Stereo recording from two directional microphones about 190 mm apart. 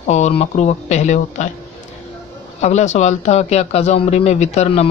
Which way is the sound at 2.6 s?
35° left (ahead or behind).